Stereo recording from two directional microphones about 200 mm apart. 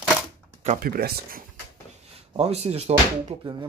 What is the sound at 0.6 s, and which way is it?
Speech, 45° right (ahead or behind).